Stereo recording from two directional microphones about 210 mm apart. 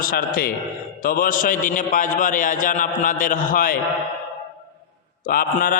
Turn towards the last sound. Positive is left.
turn(degrees=45)  # may be behind; listen again after turning